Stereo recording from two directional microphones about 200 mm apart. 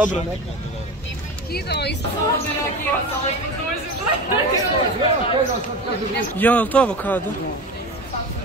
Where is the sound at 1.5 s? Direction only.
55° left (ahead or behind).